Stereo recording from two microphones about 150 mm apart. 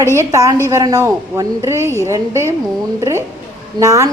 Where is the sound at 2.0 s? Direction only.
20° right (ahead or behind).